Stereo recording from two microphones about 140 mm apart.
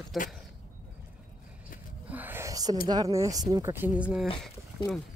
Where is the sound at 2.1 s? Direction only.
15° right (ahead or behind).